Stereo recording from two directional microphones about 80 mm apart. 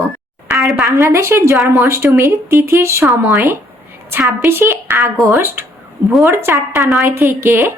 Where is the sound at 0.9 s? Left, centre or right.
Right.